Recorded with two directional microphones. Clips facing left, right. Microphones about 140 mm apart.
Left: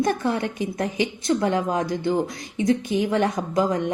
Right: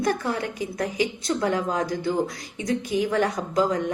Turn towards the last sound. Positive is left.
turn(degrees=20)  # may be behind; listen again after turning